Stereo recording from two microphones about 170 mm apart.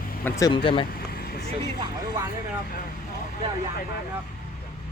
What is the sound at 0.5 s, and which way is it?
Speech, 30° left (ahead or behind).